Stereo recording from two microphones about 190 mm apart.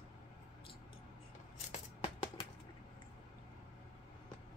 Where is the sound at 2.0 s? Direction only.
30° left (ahead or behind).